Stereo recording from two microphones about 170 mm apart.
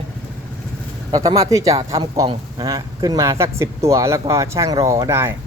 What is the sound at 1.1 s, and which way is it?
Speech, 20° right (ahead or behind).